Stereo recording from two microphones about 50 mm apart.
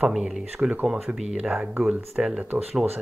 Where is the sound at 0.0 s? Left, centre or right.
Centre.